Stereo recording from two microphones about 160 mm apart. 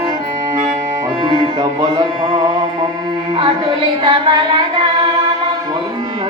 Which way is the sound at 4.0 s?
30° right (ahead or behind).